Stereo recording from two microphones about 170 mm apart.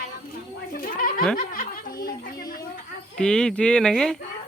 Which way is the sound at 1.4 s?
55° left (ahead or behind).